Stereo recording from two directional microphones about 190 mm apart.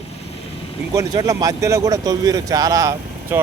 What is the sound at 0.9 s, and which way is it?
Speech, 15° right (ahead or behind).